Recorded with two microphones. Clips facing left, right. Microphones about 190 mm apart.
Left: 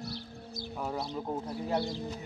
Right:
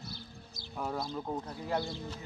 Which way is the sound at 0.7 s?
5° left (ahead or behind).